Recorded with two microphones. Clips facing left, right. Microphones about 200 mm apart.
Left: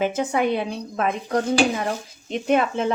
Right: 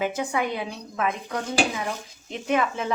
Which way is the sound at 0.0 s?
25° left (ahead or behind).